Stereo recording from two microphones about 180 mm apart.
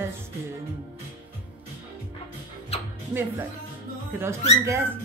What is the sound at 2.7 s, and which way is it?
Music, 35° left (ahead or behind).